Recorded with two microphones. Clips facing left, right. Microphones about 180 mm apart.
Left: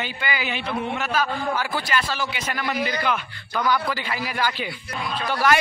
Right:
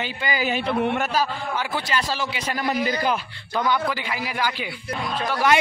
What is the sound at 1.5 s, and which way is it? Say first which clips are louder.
A man's voice: even; 20° right (ahead or behind).